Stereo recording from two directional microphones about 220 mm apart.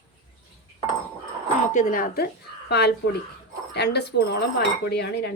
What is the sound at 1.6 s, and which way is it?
Speech, 35° left (ahead or behind).